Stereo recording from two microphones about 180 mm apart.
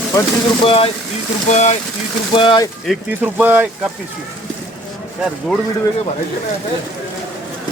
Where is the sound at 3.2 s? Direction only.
10° right (ahead or behind).